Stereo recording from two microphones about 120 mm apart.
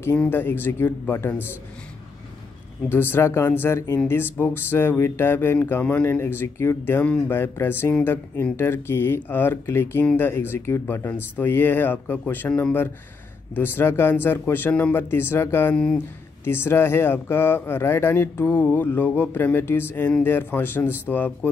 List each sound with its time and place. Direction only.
0.0 s speech: 15° left (ahead or behind)
2.9 s speech: 15° left (ahead or behind)
15.7 s speech: 5° left (ahead or behind)
16.4 s speech: 20° left (ahead or behind)